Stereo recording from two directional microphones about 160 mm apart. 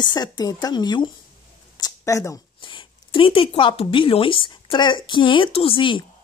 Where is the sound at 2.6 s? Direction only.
30° left (ahead or behind).